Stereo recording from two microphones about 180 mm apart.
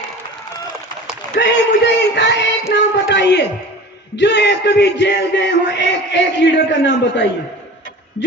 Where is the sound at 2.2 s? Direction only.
80° left.